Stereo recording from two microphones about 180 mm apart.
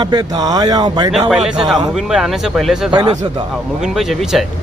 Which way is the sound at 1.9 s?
Centre (ahead or behind).